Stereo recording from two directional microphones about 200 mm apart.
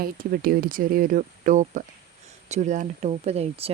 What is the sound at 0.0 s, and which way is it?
Speech, 45° right (ahead or behind).